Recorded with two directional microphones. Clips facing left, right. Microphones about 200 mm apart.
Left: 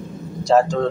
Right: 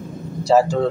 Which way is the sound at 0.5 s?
5° right (ahead or behind).